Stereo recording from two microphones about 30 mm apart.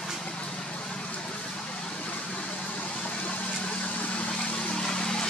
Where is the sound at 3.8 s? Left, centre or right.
Left.